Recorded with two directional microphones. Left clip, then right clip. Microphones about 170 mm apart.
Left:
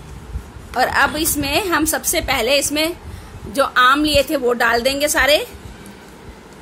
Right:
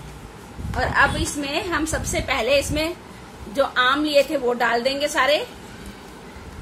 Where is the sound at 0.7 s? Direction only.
70° left (ahead or behind).